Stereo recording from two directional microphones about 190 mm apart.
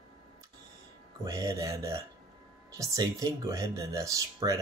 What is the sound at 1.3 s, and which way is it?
Speech, 15° right (ahead or behind).